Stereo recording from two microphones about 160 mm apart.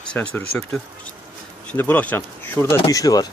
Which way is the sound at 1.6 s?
10° left (ahead or behind).